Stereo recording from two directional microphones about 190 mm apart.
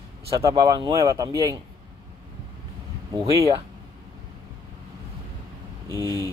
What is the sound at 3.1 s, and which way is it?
Speech, 15° right (ahead or behind).